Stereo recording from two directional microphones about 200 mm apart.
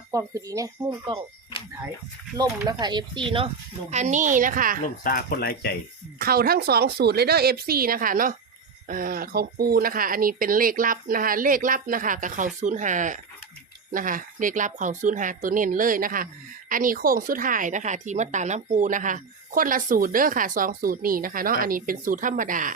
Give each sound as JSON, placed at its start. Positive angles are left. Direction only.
{"t": 0.1, "sound": "speech", "side_deg": -15}
{"t": 2.6, "sound": "a woman's voice", "side_deg": -20}
{"t": 5.0, "sound": "speech", "side_deg": 45}
{"t": 6.1, "sound": "speech", "side_deg": -50}